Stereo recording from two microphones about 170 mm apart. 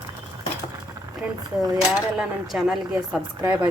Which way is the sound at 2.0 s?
5° right (ahead or behind).